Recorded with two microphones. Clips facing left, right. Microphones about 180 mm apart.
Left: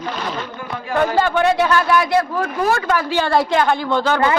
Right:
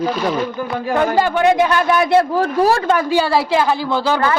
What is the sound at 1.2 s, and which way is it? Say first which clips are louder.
Speech: right 2 dB; 15° right (ahead or behind).